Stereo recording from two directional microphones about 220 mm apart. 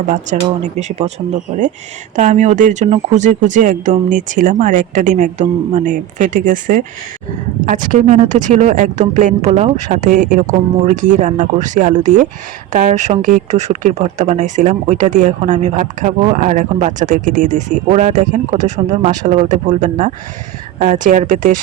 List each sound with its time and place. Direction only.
0.1 s speech: 35° right (ahead or behind)
7.9 s speech: 35° right (ahead or behind)